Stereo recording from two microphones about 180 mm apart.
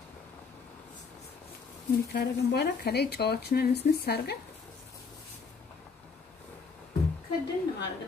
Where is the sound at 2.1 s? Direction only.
65° left (ahead or behind).